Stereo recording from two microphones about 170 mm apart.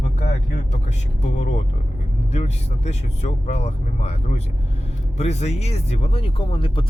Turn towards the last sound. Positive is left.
turn(degrees=30)  # may be behind; listen again after turning